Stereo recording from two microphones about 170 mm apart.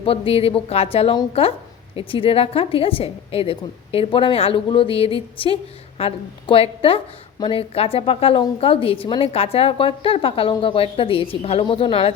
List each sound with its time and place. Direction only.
0.0 s a woman's voice: 35° left (ahead or behind)